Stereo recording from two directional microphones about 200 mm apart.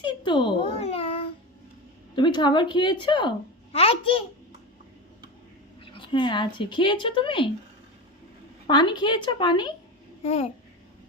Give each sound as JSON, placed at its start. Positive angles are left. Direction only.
{"t": 0.0, "sound": "babbling", "side_deg": 25}
{"t": 2.1, "sound": "speech", "side_deg": 25}
{"t": 5.8, "sound": "speech", "side_deg": 25}
{"t": 8.6, "sound": "a child's voice", "side_deg": 20}